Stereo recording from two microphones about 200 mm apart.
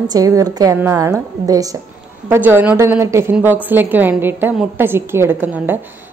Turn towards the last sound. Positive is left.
turn(degrees=-10)  # may be behind; listen again after turning